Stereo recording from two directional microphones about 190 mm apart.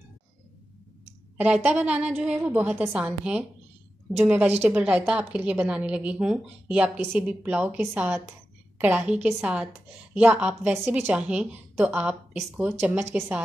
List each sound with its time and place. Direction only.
1.4 s a woman's voice: 10° right (ahead or behind)